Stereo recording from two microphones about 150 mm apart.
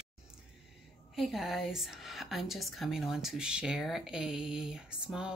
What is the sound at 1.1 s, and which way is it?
A woman's voice, centre (ahead or behind).